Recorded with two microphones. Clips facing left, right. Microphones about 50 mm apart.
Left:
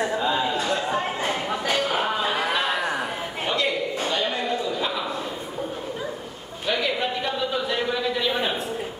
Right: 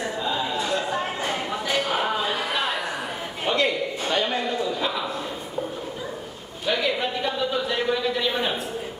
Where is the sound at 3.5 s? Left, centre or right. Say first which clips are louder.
Right 2 dB; centre.